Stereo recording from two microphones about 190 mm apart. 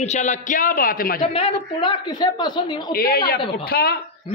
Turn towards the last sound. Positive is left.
turn(degrees=55)  # may be behind; listen again after turning